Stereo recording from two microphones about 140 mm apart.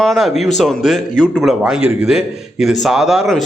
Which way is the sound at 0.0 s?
Centre (ahead or behind).